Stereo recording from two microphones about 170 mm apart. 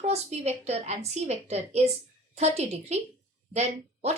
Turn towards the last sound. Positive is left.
turn(degrees=-40)  # may be behind; listen again after turning